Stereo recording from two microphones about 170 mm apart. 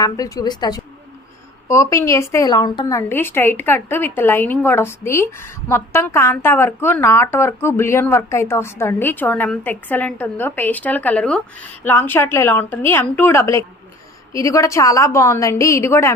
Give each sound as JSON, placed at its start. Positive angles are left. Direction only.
{"t": 0.0, "sound": "a woman's voice", "side_deg": 20}
{"t": 3.1, "sound": "a woman's voice", "side_deg": 15}